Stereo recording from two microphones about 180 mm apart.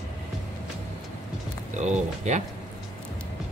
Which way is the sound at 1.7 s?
40° right (ahead or behind).